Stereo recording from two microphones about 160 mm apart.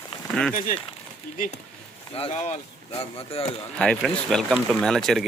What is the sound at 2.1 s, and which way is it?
Speech, 40° left (ahead or behind).